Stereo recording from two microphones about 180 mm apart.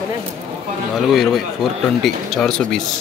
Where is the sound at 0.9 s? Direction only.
Centre (ahead or behind).